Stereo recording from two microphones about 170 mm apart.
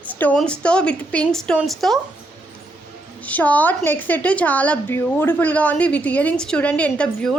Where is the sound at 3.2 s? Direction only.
10° left (ahead or behind).